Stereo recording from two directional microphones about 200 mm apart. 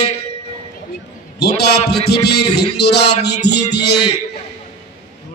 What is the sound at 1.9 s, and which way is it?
Music, 55° left (ahead or behind).